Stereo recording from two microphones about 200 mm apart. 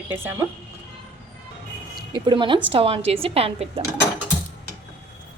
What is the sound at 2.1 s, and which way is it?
A woman's voice, 25° right (ahead or behind).